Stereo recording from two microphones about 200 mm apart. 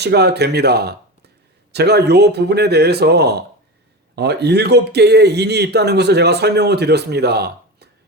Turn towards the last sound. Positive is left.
turn(degrees=-55)  # may be behind; listen again after turning